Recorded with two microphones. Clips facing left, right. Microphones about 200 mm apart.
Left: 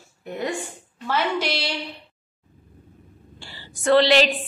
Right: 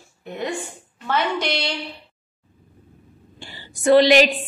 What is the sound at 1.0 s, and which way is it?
Speech, 5° left (ahead or behind).